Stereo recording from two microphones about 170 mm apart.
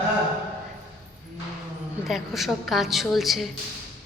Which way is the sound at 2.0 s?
Centre (ahead or behind).